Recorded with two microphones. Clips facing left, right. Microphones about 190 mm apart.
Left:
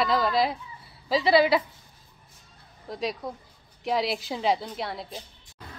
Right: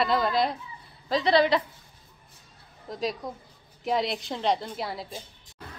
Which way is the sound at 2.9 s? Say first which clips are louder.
Even; centre (ahead or behind).